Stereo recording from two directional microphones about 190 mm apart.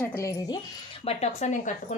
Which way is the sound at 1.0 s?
35° left (ahead or behind).